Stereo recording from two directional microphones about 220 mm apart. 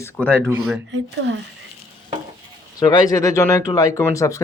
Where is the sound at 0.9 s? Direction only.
55° right (ahead or behind).